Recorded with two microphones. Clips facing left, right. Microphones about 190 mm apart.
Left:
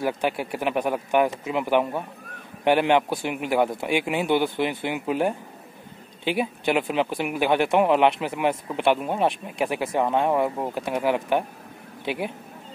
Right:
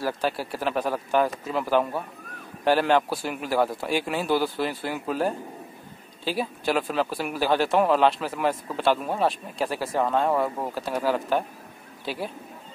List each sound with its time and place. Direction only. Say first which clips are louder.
0.0 s speech: left 2 dB; 20° left (ahead or behind)